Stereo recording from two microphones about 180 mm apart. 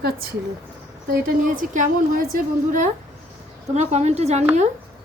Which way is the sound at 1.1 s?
45° right (ahead or behind).